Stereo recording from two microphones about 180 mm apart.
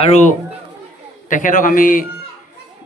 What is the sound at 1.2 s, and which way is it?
Speech, 45° left (ahead or behind).